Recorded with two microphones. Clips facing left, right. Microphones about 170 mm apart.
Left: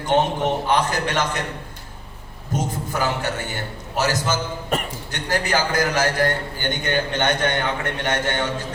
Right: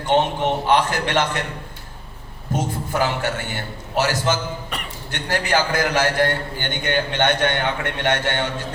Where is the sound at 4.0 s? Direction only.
45° left (ahead or behind).